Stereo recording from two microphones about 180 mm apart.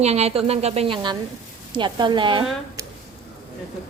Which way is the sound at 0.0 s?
35° right (ahead or behind).